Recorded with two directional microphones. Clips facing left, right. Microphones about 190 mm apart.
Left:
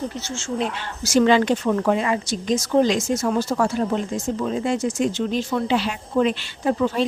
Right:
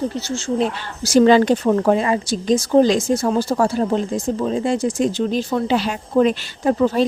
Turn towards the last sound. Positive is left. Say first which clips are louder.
# right 4 dB
turn(degrees=-40)  # may be behind; listen again after turning